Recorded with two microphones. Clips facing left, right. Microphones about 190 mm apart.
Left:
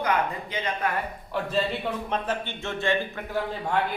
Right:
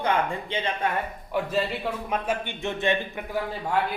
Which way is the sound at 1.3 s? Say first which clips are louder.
Right 1 dB; 10° right (ahead or behind).